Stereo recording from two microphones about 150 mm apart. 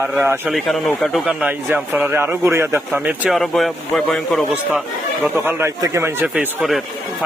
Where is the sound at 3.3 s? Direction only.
Centre (ahead or behind).